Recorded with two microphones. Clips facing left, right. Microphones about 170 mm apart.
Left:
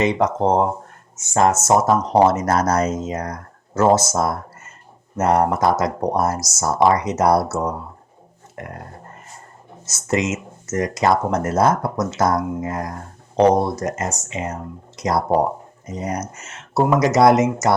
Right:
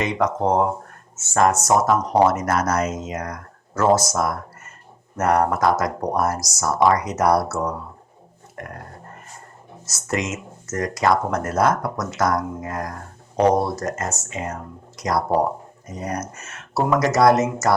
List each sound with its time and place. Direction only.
0.0 s speech: 25° left (ahead or behind)
9.9 s speech: 20° left (ahead or behind)